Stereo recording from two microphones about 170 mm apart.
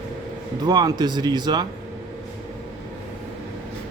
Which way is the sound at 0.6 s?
25° right (ahead or behind).